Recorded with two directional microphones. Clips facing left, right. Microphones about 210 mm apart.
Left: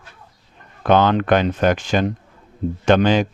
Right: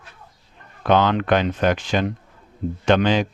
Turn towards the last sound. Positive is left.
turn(degrees=45)  # may be behind; listen again after turning